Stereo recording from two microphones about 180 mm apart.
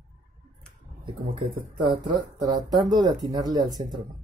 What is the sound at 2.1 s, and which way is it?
Speech, 25° right (ahead or behind).